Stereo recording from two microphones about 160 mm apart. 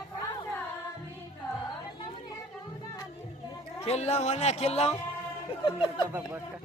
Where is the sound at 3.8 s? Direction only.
40° left (ahead or behind).